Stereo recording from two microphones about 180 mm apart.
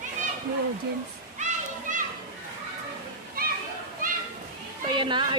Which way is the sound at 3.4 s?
55° right (ahead or behind).